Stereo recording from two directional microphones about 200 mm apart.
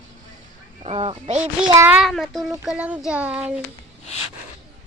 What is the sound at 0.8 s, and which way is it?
Speech, 30° right (ahead or behind).